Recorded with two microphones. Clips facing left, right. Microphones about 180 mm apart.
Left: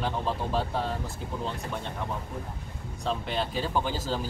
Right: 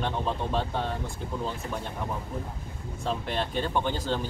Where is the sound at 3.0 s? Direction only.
Centre (ahead or behind).